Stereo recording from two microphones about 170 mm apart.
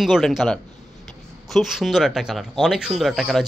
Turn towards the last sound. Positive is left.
turn(degrees=0)  # may be behind; listen again after turning